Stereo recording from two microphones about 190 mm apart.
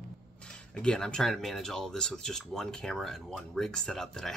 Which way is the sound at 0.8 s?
5° left (ahead or behind).